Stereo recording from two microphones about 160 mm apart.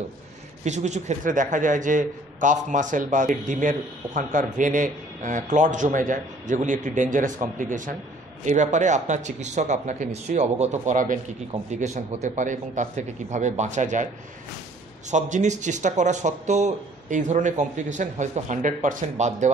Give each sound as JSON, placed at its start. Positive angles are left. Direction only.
{"t": 0.7, "sound": "a man's voice", "side_deg": -45}
{"t": 15.0, "sound": "a man's voice", "side_deg": -50}